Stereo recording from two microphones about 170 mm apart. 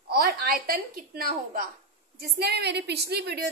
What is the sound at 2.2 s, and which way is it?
A woman's voice, 70° right (ahead or behind).